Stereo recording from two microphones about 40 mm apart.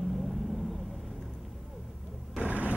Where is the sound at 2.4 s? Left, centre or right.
Right.